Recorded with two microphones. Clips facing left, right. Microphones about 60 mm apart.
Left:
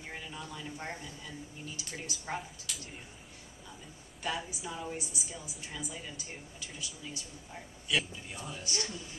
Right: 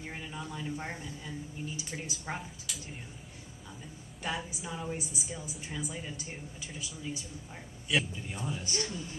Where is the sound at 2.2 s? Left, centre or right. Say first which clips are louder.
Even; centre.